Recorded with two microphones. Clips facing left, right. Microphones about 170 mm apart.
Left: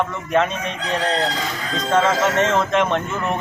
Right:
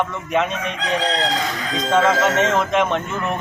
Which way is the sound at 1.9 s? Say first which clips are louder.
Right 1 dB; 5° right (ahead or behind).